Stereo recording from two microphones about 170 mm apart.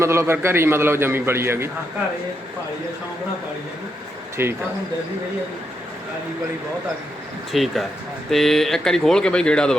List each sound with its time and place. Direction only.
0.0 s a man's voice: 15° right (ahead or behind)
4.4 s a man's voice: 15° right (ahead or behind)
7.5 s speech: centre (ahead or behind)